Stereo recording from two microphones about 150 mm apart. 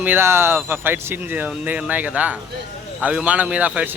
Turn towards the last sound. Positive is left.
turn(degrees=-10)  # may be behind; listen again after turning